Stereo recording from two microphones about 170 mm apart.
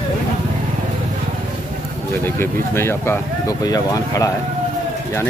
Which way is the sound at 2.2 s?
15° left (ahead or behind).